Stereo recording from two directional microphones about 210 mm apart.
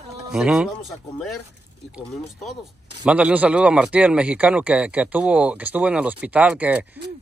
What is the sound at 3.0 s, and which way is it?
A man's voice, 5° right (ahead or behind).